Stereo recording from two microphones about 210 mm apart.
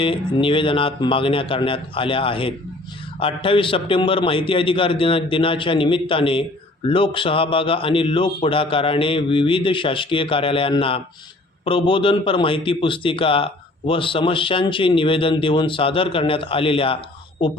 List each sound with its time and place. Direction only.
0.0 s a man's voice: 25° left (ahead or behind)